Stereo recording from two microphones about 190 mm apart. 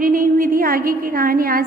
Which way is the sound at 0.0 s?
45° right (ahead or behind).